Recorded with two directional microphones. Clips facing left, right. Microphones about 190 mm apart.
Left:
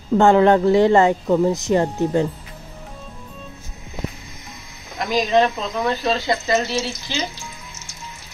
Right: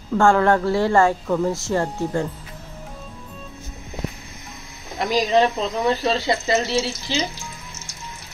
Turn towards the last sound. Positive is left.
turn(degrees=-25)  # may be behind; listen again after turning